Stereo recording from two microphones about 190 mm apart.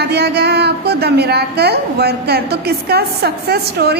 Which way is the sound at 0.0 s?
60° right (ahead or behind).